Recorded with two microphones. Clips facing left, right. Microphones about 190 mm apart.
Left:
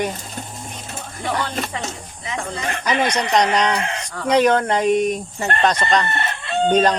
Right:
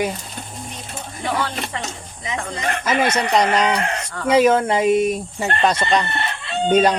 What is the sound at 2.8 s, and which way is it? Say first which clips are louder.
Speech: right 1 dB; 5° right (ahead or behind).